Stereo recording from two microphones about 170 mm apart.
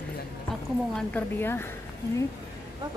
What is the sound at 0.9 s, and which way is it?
Speech, 10° left (ahead or behind).